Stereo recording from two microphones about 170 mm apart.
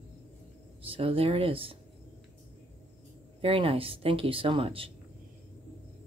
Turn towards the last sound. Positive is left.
turn(degrees=-30)  # may be behind; listen again after turning